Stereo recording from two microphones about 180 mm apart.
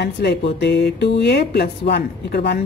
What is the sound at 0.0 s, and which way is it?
A woman's voice, 65° left (ahead or behind).